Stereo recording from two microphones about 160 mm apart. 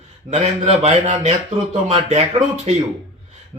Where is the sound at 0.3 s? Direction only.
45° right (ahead or behind).